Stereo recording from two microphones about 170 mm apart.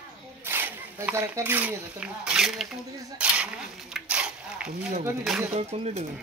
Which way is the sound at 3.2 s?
5° right (ahead or behind).